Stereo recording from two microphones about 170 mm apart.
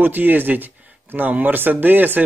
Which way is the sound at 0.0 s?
10° right (ahead or behind).